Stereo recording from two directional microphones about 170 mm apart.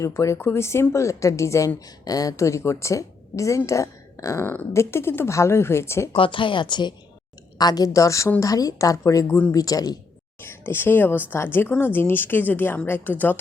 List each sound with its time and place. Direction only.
0.0 s speech: 15° left (ahead or behind)
6.1 s a woman's voice: 30° left (ahead or behind); by 13.4 s 10° left (ahead or behind)